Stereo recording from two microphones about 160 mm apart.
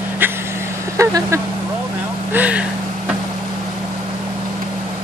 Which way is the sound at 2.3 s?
10° right (ahead or behind).